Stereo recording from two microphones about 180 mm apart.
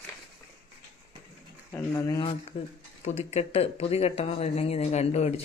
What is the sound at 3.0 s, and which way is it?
Speech, 35° left (ahead or behind).